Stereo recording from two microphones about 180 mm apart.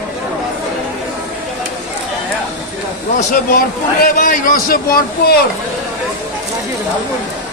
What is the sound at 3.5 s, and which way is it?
A man's voice, 55° left (ahead or behind).